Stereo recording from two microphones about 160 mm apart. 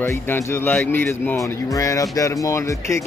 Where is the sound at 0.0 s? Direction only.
15° left (ahead or behind).